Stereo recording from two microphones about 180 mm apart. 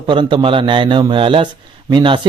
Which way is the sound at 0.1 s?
25° right (ahead or behind).